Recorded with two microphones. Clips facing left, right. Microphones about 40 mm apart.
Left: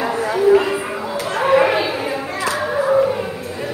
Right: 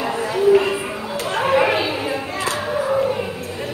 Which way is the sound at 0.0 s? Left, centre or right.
Centre.